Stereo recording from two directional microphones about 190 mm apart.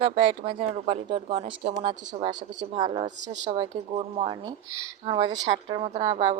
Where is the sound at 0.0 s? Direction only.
30° right (ahead or behind).